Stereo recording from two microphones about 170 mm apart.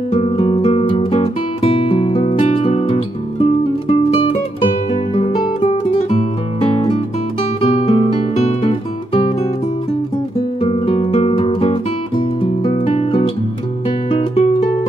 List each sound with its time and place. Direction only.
0.1 s music: 35° left (ahead or behind)
7.6 s guitar: 40° left (ahead or behind)
10.6 s music: 35° left (ahead or behind)